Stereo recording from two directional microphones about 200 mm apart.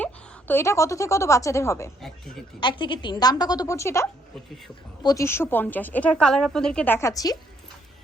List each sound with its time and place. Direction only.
0.0 s a woman's voice: 10° left (ahead or behind)
2.0 s speech: centre (ahead or behind)
2.6 s a woman's voice: 25° left (ahead or behind)